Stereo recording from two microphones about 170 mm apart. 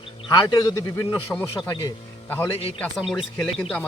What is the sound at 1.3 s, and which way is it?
A man's voice, 15° left (ahead or behind).